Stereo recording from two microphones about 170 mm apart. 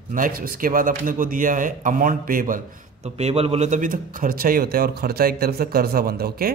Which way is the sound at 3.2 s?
40° right (ahead or behind).